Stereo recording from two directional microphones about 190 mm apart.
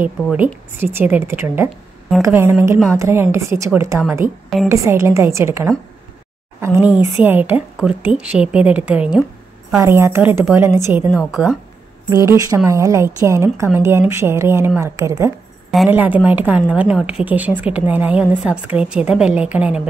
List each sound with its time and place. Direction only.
0.0 s a woman's voice: 10° right (ahead or behind)
4.2 s a woman's voice: 45° right (ahead or behind)
4.6 s a woman's voice: 15° right (ahead or behind)
15.7 s a woman's voice: 5° right (ahead or behind)